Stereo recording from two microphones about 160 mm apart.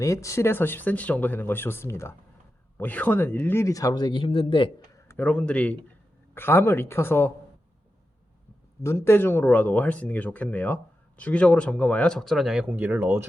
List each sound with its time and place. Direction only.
0.0 s speech: 20° left (ahead or behind)
5.0 s speech: 10° left (ahead or behind)
8.8 s speech: 15° left (ahead or behind); by 13.2 s 15° right (ahead or behind)